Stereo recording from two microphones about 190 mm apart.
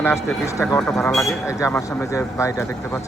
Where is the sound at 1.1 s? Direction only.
Centre (ahead or behind).